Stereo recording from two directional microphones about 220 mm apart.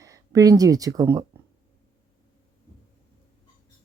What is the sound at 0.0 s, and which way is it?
Speech, 15° right (ahead or behind).